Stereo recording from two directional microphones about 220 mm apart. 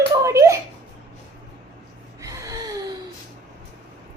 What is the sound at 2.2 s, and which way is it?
Gasp, 15° right (ahead or behind).